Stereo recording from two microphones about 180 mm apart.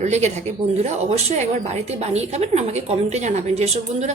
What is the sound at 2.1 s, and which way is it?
A woman's voice, 35° right (ahead or behind).